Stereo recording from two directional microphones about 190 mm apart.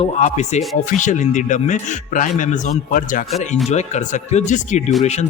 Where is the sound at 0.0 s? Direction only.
35° left (ahead or behind).